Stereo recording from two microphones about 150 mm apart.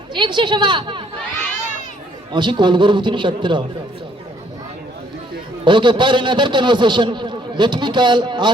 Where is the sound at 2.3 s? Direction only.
30° right (ahead or behind).